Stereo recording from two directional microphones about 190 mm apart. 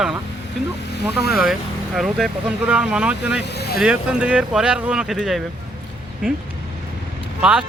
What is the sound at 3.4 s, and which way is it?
Speech, 60° left (ahead or behind).